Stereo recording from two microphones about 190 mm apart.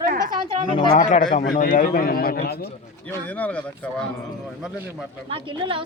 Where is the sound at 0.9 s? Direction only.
40° left (ahead or behind); by 2.6 s 55° left (ahead or behind).